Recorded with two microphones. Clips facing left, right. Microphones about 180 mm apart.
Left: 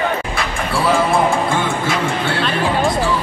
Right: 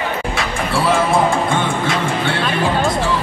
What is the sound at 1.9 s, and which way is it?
Music, centre (ahead or behind).